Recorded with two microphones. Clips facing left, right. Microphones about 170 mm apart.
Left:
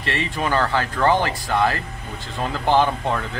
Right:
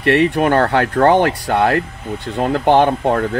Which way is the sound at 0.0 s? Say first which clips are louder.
Right 11 dB; 65° right (ahead or behind).